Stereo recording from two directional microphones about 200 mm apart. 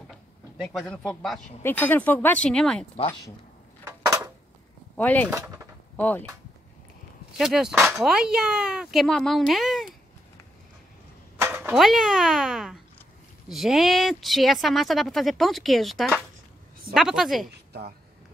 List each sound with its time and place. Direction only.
0.6 s speech: centre (ahead or behind)
4.9 s speech: 10° left (ahead or behind)
5.3 s a sound: 15° right (ahead or behind)
5.9 s speech: 10° left (ahead or behind)
7.3 s speech: centre (ahead or behind)
11.3 s a sound: 10° right (ahead or behind)
11.7 s speech: centre (ahead or behind)